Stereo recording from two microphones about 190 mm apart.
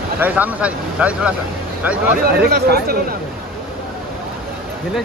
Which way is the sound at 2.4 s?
55° right (ahead or behind).